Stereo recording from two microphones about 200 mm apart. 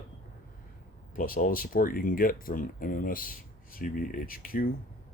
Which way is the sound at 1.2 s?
45° left (ahead or behind).